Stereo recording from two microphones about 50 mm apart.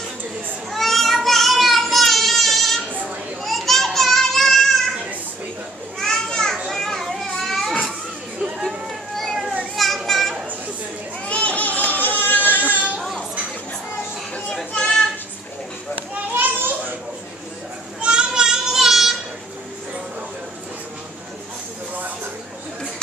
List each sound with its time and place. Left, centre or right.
0.7 s a sound: centre
3.4 s children playing: centre
5.9 s children playing: centre
8.6 s a sound: centre
9.8 s children playing: centre
11.2 s a sound: left
12.6 s children playing: right
16.3 s children playing: right
18.0 s children playing: centre